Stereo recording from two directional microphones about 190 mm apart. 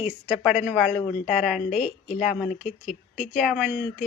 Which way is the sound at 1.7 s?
40° left (ahead or behind).